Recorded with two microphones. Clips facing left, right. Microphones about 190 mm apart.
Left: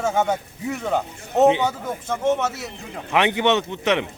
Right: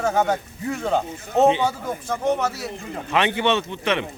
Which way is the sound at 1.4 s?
15° left (ahead or behind).